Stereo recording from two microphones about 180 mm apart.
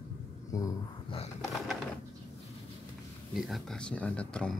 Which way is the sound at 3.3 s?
Centre (ahead or behind).